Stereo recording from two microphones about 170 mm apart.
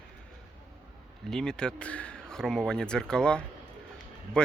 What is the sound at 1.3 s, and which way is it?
Speech, 5° left (ahead or behind).